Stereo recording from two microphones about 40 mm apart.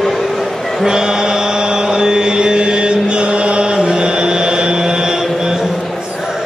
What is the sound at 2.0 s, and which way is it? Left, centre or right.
Chant, right.